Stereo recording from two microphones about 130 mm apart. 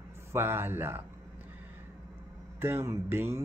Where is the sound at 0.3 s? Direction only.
20° right (ahead or behind).